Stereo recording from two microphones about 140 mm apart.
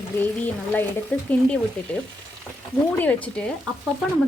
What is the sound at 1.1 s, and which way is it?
Frying, 10° left (ahead or behind).